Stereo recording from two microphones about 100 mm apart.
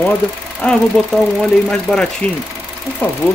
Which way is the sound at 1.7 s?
5° left (ahead or behind).